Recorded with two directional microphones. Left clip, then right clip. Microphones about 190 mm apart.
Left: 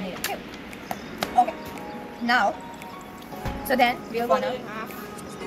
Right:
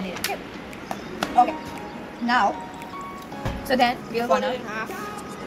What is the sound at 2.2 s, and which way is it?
Speech, 35° left (ahead or behind).